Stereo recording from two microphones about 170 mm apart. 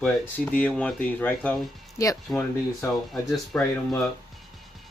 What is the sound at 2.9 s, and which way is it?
Speech, centre (ahead or behind).